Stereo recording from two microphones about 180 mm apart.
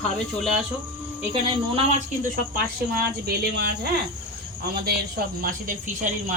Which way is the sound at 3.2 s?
60° right (ahead or behind).